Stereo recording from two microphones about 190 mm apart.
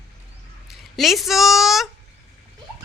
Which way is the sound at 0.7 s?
Centre (ahead or behind).